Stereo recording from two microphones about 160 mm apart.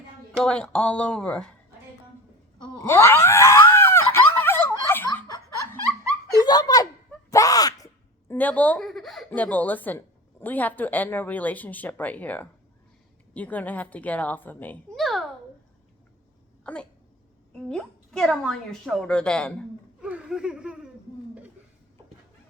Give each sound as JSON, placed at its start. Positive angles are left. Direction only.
{"t": 0.4, "sound": "a woman's voice", "side_deg": 5}
{"t": 2.8, "sound": "screaming", "side_deg": 15}
{"t": 6.4, "sound": "a sound", "side_deg": 25}
{"t": 8.3, "sound": "speech", "side_deg": 10}
{"t": 14.9, "sound": "a sound", "side_deg": 0}
{"t": 16.7, "sound": "a woman's voice", "side_deg": 5}
{"t": 20.0, "sound": "speech", "side_deg": -5}